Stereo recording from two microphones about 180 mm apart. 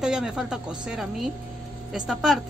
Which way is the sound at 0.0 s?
5° right (ahead or behind).